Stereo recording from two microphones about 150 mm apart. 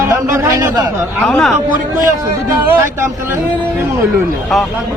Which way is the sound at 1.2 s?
5° left (ahead or behind).